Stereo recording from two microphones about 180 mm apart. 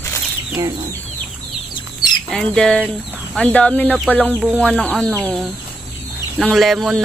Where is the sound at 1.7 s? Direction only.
25° left (ahead or behind).